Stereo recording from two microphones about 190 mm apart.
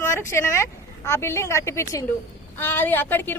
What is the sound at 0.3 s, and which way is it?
A woman's voice, 15° left (ahead or behind).